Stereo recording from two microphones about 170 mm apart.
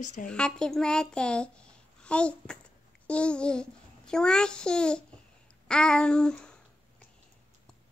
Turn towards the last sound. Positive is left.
turn(degrees=5)  # may be behind; listen again after turning